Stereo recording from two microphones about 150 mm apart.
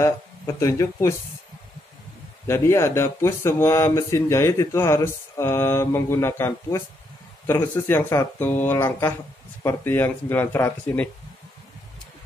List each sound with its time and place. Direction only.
0.6 s speech: 20° left (ahead or behind)
2.4 s speech: 20° left (ahead or behind)